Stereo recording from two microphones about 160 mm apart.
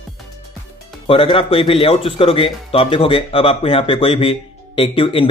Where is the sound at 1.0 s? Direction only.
30° left (ahead or behind).